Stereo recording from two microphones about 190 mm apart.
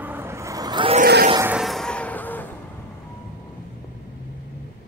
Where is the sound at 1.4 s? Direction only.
5° right (ahead or behind).